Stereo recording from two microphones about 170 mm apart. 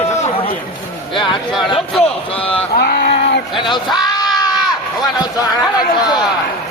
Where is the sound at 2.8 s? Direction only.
70° left (ahead or behind).